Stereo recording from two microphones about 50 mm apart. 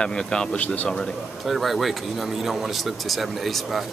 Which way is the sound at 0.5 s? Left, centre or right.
Left.